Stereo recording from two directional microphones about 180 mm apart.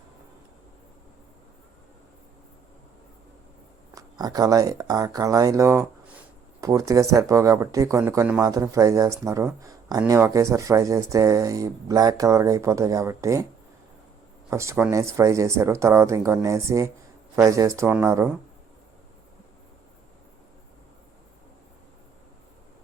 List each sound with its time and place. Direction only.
3.9 s speech: 20° right (ahead or behind)
14.5 s speech: 15° right (ahead or behind)